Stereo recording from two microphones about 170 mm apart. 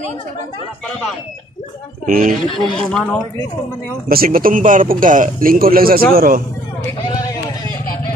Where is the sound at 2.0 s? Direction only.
55° right (ahead or behind).